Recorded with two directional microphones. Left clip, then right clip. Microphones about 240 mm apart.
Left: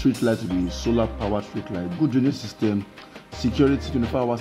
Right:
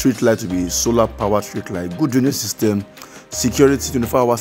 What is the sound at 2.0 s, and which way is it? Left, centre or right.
Speech, right.